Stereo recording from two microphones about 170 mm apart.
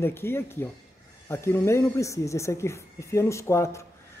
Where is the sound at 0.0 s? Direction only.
15° left (ahead or behind).